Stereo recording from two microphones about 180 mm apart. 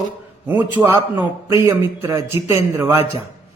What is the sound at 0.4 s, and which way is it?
A man's voice, 10° right (ahead or behind).